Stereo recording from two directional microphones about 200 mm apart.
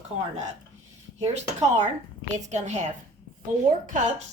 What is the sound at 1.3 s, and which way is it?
Speech, 35° right (ahead or behind).